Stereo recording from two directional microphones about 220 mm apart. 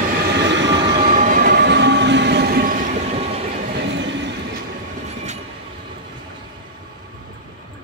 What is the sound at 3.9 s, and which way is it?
Train, 55° right (ahead or behind).